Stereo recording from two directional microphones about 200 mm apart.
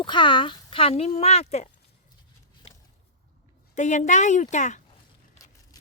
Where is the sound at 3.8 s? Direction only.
35° left (ahead or behind).